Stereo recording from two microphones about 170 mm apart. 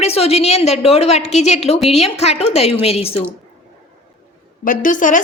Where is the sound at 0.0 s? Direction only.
35° left (ahead or behind).